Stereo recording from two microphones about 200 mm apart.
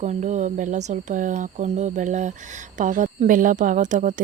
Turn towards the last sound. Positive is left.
turn(degrees=-40)  # may be behind; listen again after turning